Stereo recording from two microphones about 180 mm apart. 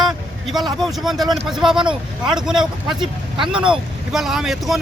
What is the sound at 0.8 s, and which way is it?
A man's voice, centre (ahead or behind).